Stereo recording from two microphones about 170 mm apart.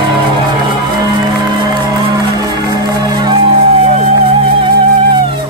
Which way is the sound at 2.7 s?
25° right (ahead or behind).